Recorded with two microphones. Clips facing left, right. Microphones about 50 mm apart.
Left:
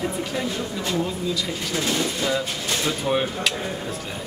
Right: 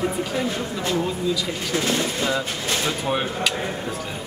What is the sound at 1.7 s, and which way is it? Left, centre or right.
Speech, right.